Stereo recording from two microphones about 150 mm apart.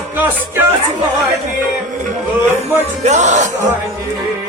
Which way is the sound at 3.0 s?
50° right (ahead or behind).